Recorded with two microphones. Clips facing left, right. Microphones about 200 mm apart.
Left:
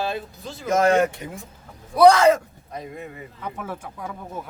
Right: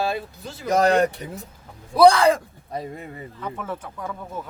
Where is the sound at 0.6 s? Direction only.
35° right (ahead or behind).